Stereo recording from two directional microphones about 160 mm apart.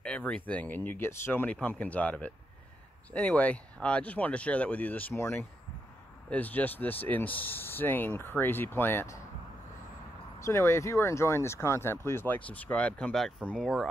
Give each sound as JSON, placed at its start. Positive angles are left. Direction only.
{"t": 0.0, "sound": "speech", "side_deg": 5}
{"t": 10.4, "sound": "speech", "side_deg": 15}